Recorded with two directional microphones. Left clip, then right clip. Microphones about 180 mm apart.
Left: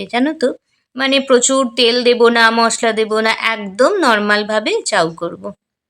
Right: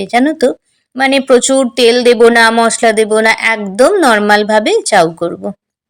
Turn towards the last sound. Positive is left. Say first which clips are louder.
# right 6 dB
turn(degrees=-15)  # may be behind; listen again after turning